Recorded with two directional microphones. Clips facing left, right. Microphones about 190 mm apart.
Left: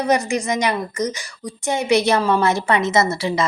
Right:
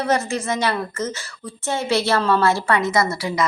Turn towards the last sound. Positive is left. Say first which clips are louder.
# left 2 dB
turn(degrees=25)  # may be behind; listen again after turning